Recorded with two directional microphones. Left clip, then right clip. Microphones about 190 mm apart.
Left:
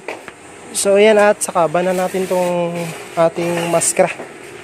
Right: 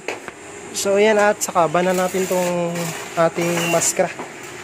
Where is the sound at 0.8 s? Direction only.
20° left (ahead or behind).